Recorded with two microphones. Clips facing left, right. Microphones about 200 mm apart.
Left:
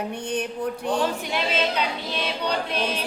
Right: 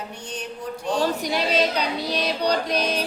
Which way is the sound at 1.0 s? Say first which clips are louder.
Right 2 dB; 40° right (ahead or behind).